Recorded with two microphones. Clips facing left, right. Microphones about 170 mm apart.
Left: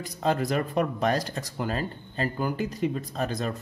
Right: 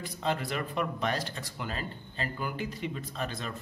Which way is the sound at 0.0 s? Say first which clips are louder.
Left 6 dB; 40° left (ahead or behind).